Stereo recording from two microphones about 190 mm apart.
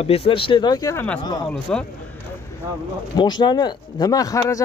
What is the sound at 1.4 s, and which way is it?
Speech, 5° left (ahead or behind).